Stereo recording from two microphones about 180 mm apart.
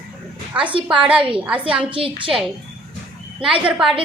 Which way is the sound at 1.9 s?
30° right (ahead or behind).